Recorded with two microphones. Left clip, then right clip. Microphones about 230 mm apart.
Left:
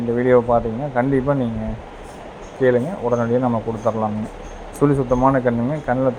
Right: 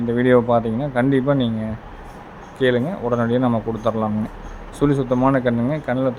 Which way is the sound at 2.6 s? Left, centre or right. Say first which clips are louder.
Left 2 dB; centre.